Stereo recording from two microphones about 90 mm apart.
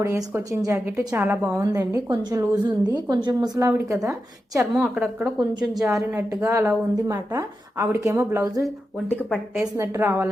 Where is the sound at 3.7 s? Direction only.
35° right (ahead or behind).